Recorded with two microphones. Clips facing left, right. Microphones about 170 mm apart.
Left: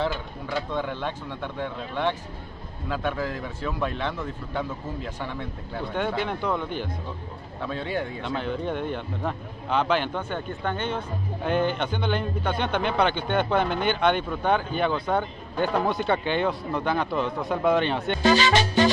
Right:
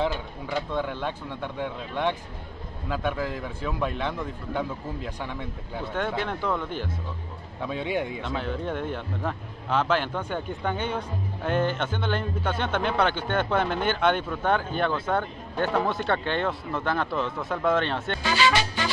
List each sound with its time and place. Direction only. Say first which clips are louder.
0.0 s speech: even; 10° right (ahead or behind)
7.6 s speech: right 1 dB; 15° right (ahead or behind)
8.2 s speech: left 1 dB; centre (ahead or behind)
18.2 s speech: left 4 dB; 40° left (ahead or behind)